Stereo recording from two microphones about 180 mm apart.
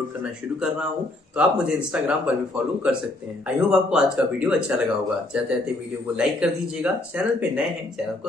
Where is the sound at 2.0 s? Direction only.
5° right (ahead or behind).